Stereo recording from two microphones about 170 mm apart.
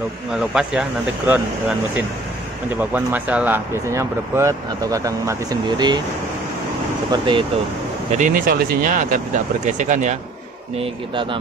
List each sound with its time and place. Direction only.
0.3 s speech: 5° right (ahead or behind)
2.8 s speech: 10° right (ahead or behind); by 6.0 s 25° right (ahead or behind)
7.1 s speech: 25° right (ahead or behind)
8.2 s speech: 55° right (ahead or behind)